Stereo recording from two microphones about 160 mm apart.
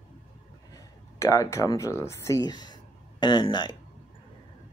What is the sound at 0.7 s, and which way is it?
Speech, 20° left (ahead or behind).